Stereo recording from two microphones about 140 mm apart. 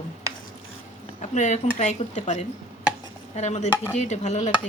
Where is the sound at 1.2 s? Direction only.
55° left (ahead or behind).